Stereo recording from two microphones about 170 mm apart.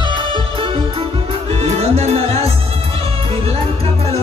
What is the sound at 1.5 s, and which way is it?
Music, 35° right (ahead or behind).